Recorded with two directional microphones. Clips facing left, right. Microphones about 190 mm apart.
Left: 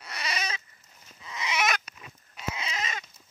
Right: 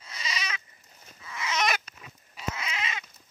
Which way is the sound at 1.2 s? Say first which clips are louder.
Even; 20° left (ahead or behind).